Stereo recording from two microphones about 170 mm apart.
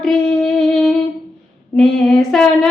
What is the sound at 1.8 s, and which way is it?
Female singing, 5° left (ahead or behind).